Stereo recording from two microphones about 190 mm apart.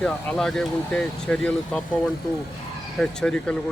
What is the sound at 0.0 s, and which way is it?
Speech, 5° left (ahead or behind).